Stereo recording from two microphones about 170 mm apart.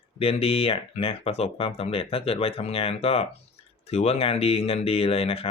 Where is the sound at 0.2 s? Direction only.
35° left (ahead or behind).